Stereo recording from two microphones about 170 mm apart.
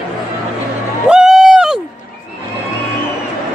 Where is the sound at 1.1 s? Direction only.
5° right (ahead or behind).